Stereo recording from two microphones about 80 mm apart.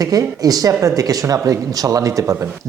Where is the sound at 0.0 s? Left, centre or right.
Right.